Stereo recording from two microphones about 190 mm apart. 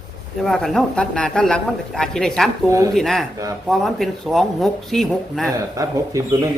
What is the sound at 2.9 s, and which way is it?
Speech, centre (ahead or behind).